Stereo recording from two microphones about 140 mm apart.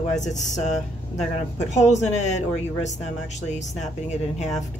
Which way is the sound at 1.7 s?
55° left (ahead or behind).